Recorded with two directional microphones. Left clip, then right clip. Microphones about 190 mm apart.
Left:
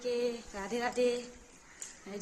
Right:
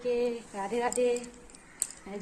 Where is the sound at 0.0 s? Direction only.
20° left (ahead or behind).